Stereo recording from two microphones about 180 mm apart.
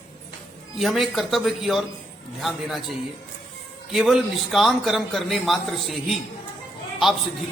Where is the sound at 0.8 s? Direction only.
Centre (ahead or behind).